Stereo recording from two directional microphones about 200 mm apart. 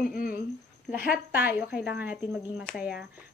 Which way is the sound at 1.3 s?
5° right (ahead or behind).